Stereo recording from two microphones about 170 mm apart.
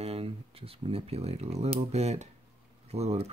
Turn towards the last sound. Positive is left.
turn(degrees=-40)  # may be behind; listen again after turning